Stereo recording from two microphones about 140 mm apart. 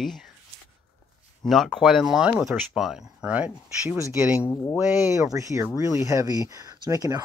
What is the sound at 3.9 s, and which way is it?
Speech, 20° right (ahead or behind).